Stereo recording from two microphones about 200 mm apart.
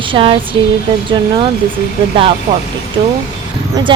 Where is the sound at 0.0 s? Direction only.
25° right (ahead or behind).